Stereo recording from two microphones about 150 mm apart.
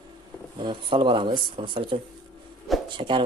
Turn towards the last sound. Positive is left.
turn(degrees=-30)  # may be behind; listen again after turning